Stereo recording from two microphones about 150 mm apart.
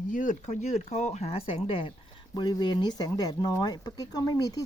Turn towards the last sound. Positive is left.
turn(degrees=25)  # may be behind; listen again after turning